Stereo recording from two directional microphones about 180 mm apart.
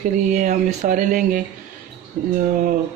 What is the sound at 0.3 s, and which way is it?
Speech, 45° right (ahead or behind).